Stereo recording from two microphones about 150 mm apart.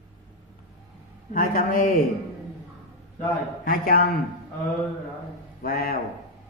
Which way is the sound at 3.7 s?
75° left (ahead or behind).